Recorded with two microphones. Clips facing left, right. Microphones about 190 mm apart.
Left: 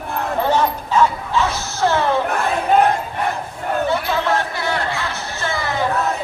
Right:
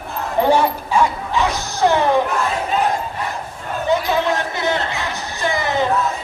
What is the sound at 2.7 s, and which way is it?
Battle cry, 60° left (ahead or behind).